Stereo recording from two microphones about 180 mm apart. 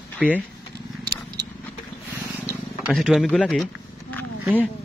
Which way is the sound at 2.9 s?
Centre (ahead or behind).